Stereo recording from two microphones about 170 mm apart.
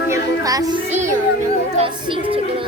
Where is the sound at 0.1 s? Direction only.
20° right (ahead or behind).